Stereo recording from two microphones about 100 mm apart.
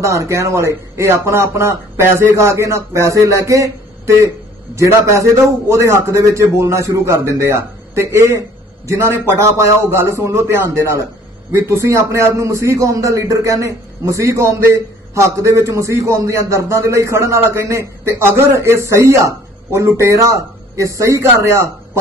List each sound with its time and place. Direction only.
0.0 s a man's voice: 30° right (ahead or behind)